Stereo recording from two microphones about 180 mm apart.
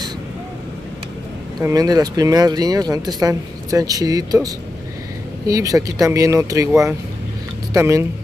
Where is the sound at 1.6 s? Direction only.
20° right (ahead or behind).